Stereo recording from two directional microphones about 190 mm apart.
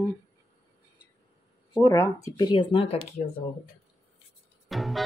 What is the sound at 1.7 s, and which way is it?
Speech, 15° left (ahead or behind).